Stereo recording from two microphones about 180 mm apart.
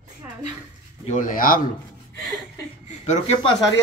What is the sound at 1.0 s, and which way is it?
Speech, 45° left (ahead or behind).